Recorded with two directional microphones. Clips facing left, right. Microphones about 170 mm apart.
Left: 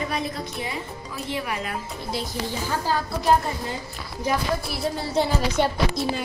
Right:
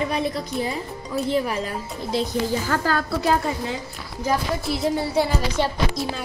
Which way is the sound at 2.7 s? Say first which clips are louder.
Even; 90° right.